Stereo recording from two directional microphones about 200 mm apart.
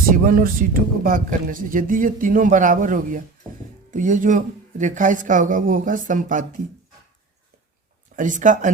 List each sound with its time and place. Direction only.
0.1 s speech: 45° right (ahead or behind)
8.1 s speech: 40° right (ahead or behind)